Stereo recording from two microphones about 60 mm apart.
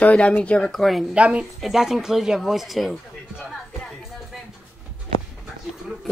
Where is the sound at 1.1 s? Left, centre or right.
Right.